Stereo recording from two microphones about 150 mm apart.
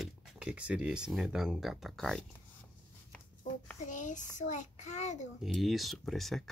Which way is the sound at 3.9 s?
55° left (ahead or behind).